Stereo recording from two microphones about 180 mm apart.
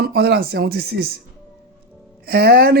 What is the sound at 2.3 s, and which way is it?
Speech, 60° right (ahead or behind).